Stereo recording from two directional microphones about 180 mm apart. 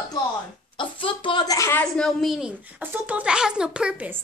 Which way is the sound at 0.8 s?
30° left (ahead or behind).